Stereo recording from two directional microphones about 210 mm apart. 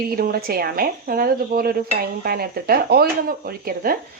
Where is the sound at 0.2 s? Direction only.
45° right (ahead or behind).